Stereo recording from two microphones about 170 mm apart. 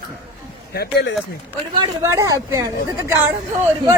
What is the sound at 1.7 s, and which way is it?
Speech, 20° right (ahead or behind).